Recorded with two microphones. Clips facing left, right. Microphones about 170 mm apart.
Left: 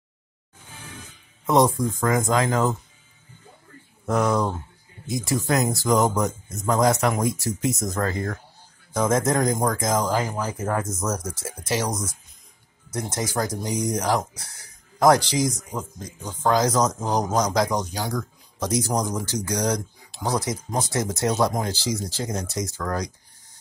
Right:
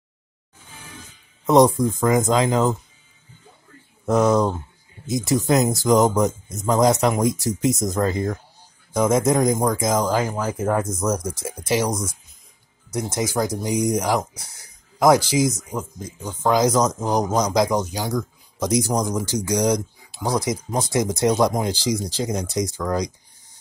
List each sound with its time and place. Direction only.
1.4 s speech: 20° right (ahead or behind)
4.0 s speech: 20° right (ahead or behind)